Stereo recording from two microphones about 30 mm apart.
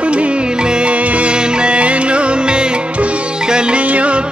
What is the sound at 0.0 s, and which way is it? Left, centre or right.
Music, right.